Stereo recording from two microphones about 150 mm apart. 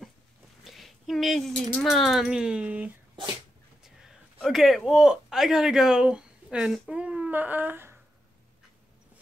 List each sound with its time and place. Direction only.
0.7 s speech: centre (ahead or behind)
4.4 s speech: centre (ahead or behind)